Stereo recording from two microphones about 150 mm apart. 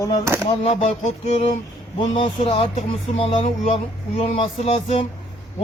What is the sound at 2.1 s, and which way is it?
Speech, 35° left (ahead or behind).